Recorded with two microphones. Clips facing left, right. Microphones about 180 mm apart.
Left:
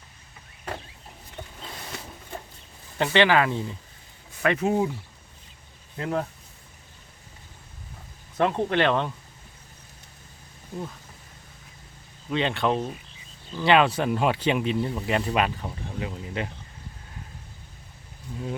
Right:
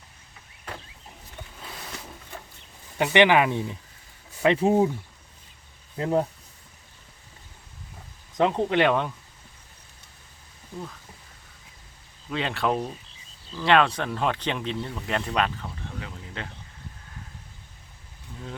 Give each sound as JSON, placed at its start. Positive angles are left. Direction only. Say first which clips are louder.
{"t": 3.0, "sound": "speech", "louder": "right 1 dB", "side_deg": -15}
{"t": 4.4, "sound": "speech", "louder": "right 3 dB", "side_deg": -30}
{"t": 6.0, "sound": "speech", "louder": "right 4 dB", "side_deg": -25}
{"t": 8.4, "sound": "speech", "louder": "right 1 dB", "side_deg": -15}
{"t": 12.3, "sound": "speech", "louder": "left 2 dB", "side_deg": 0}